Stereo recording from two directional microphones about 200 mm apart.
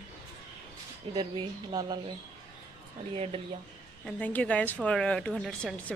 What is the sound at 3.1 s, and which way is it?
Speech, 30° right (ahead or behind).